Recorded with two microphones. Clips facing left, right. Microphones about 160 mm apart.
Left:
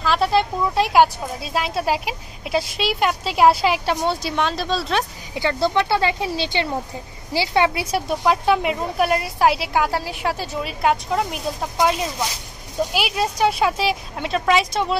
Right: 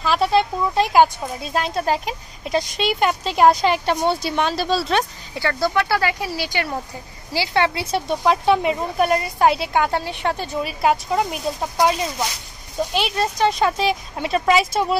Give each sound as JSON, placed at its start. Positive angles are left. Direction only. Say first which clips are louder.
{"t": 0.0, "sound": "speech", "louder": "right 1 dB", "side_deg": 0}
{"t": 5.3, "sound": "speech", "louder": "left 1 dB", "side_deg": 20}